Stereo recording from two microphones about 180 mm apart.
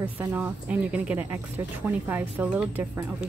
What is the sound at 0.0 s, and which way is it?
Speech, 10° right (ahead or behind).